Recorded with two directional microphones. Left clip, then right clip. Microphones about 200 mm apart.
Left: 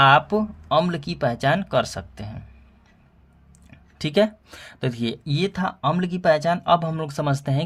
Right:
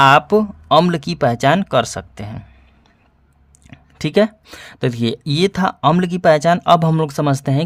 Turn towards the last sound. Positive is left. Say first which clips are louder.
# right 7 dB
turn(degrees=-35)  # may be behind; listen again after turning